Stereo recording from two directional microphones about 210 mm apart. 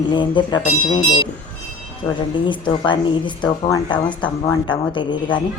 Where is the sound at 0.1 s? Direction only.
20° left (ahead or behind).